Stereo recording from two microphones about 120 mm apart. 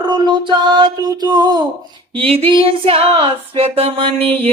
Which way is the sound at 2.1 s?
50° right (ahead or behind).